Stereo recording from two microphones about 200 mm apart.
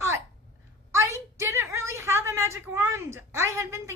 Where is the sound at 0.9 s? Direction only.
15° right (ahead or behind).